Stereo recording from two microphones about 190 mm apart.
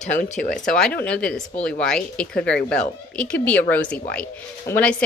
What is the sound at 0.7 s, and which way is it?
Speech, 5° left (ahead or behind).